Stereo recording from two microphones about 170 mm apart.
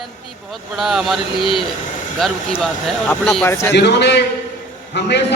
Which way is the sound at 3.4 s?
15° left (ahead or behind).